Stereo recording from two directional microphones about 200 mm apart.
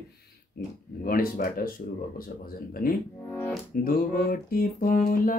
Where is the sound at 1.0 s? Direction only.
45° left (ahead or behind).